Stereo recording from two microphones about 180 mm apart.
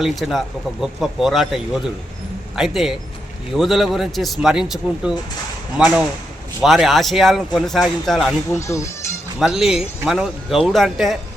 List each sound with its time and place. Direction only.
0.0 s speech: centre (ahead or behind)
8.5 s speech: 15° left (ahead or behind)
9.4 s speech: 5° right (ahead or behind)